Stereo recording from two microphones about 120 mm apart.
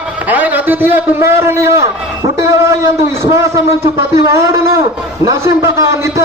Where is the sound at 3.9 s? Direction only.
25° right (ahead or behind).